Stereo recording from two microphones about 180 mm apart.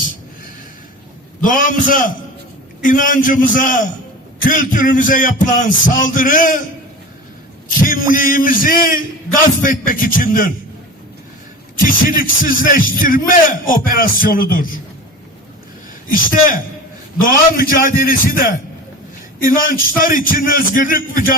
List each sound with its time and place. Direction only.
1.4 s speech: 50° left (ahead or behind)
7.7 s speech: 50° left (ahead or behind)
11.8 s speech: 50° left (ahead or behind)
16.0 s speech: 50° left (ahead or behind)
19.7 s speech: 50° left (ahead or behind)